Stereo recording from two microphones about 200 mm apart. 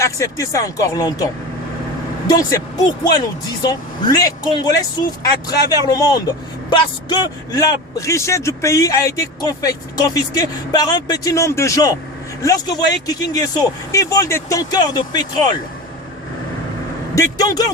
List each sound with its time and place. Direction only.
0.0 s speech: 15° left (ahead or behind)
17.2 s speech: 20° left (ahead or behind)